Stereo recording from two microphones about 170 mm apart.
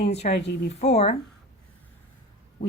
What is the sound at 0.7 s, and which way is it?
Speech, 40° left (ahead or behind).